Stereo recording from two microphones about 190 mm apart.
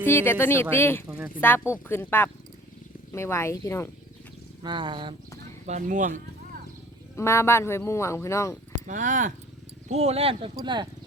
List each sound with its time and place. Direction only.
0.0 s speech: 10° left (ahead or behind)
4.6 s speech: 25° right (ahead or behind)
5.6 s speech: 40° right (ahead or behind)
7.2 s speech: 15° left (ahead or behind)
8.9 s speech: 40° right (ahead or behind); by 10.8 s 20° right (ahead or behind)